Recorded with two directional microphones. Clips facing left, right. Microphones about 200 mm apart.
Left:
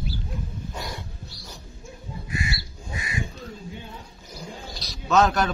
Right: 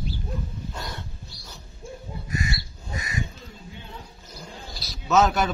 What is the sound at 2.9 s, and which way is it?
Crow, 40° right (ahead or behind).